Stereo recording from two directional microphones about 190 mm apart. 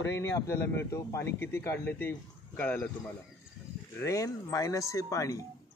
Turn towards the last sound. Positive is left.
turn(degrees=15)  # may be behind; listen again after turning